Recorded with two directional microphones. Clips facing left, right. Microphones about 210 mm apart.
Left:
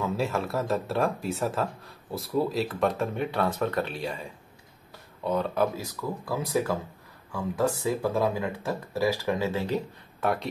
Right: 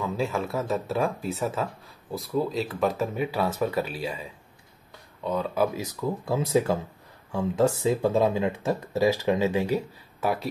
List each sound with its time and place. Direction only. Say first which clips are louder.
0.0 s speech: even; centre (ahead or behind)
5.8 s speech: right 4 dB; 25° right (ahead or behind); by 10.5 s 5° right (ahead or behind)